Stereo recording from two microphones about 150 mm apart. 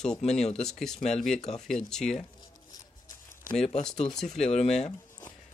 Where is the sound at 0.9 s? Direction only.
45° left (ahead or behind).